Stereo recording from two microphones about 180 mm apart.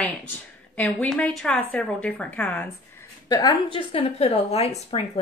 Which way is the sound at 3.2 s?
25° left (ahead or behind).